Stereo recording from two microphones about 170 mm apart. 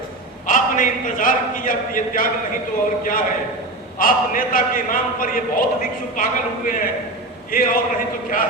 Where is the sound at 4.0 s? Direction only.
55° left (ahead or behind).